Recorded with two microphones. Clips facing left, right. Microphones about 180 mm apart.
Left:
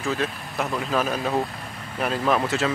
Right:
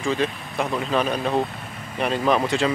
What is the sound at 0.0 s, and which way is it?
Speech, centre (ahead or behind).